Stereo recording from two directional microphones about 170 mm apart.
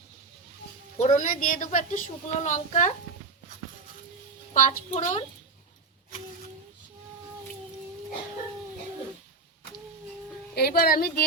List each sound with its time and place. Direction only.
0.9 s a woman's voice: 45° left (ahead or behind)
4.5 s a woman's voice: 50° left (ahead or behind)
10.5 s speech: 65° left (ahead or behind)